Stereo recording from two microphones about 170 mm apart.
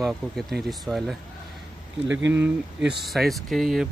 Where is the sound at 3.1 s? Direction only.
Centre (ahead or behind).